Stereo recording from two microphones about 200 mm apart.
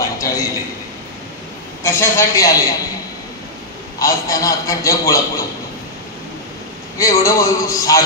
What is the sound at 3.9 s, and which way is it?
A man's voice, 15° left (ahead or behind).